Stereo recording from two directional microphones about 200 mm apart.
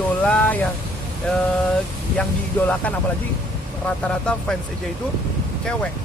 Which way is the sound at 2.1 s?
10° left (ahead or behind).